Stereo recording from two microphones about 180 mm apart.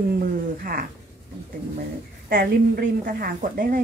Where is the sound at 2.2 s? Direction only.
55° right (ahead or behind).